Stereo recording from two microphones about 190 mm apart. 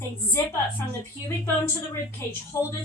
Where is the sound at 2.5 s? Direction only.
15° left (ahead or behind).